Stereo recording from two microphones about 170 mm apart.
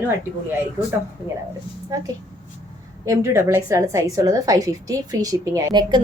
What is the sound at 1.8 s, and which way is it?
A woman's voice, 20° right (ahead or behind).